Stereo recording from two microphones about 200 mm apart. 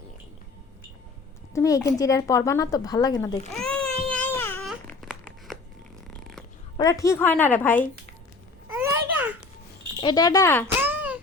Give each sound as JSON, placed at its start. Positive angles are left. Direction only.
{"t": 1.5, "sound": "speech", "side_deg": 15}
{"t": 3.5, "sound": "a child's voice", "side_deg": 0}
{"t": 4.1, "sound": "baby cry", "side_deg": 10}
{"t": 4.6, "sound": "a sound", "side_deg": 0}
{"t": 6.7, "sound": "speech", "side_deg": 15}
{"t": 8.7, "sound": "babbling", "side_deg": -10}
{"t": 10.0, "sound": "speech", "side_deg": 20}
{"t": 10.8, "sound": "a sound", "side_deg": -10}